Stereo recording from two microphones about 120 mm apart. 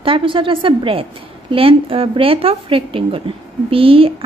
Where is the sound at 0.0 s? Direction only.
45° right (ahead or behind).